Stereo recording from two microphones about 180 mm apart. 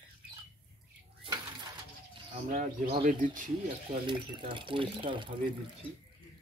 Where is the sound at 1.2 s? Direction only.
25° right (ahead or behind).